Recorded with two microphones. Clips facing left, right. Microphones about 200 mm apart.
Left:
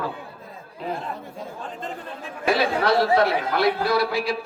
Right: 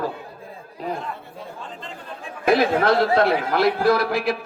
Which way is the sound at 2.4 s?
50° right (ahead or behind).